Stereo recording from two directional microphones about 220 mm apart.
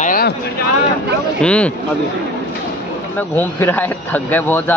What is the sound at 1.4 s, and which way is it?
Speech, 5° left (ahead or behind).